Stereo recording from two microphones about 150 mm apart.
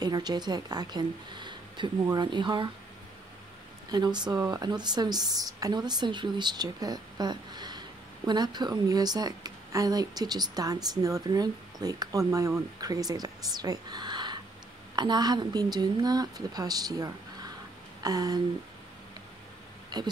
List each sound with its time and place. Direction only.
0.0 s a woman's voice: 25° right (ahead or behind)
3.9 s a woman's voice: 30° right (ahead or behind)
19.9 s speech: 25° right (ahead or behind)